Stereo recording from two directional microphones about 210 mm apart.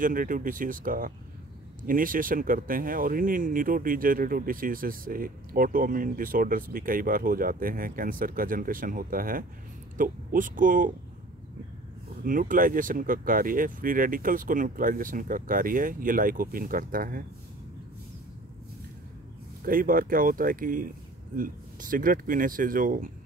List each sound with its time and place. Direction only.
0.0 s speech: 40° right (ahead or behind)
12.2 s speech: 40° right (ahead or behind)
19.6 s speech: 40° right (ahead or behind)